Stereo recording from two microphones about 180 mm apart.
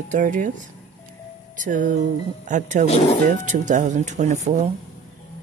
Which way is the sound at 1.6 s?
45° right (ahead or behind).